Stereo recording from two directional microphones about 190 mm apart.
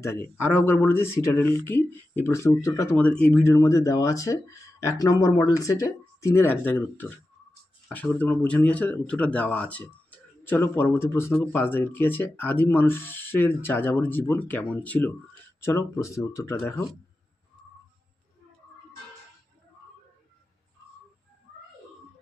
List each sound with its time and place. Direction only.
0.0 s speech: 10° left (ahead or behind)